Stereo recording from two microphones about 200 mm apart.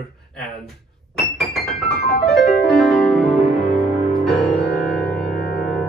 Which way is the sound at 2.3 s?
Centre (ahead or behind).